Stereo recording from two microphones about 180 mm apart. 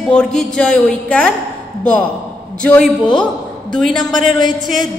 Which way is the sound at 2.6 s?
5° left (ahead or behind).